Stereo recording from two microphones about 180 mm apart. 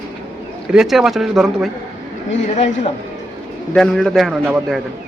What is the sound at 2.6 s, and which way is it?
Speech, 40° left (ahead or behind).